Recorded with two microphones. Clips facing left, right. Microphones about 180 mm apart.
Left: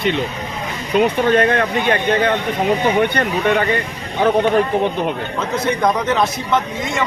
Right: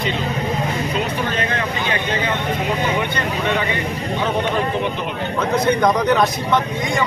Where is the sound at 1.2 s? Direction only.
55° left (ahead or behind).